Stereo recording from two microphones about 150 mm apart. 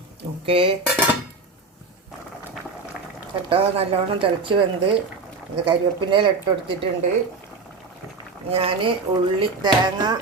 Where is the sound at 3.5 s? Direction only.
40° right (ahead or behind).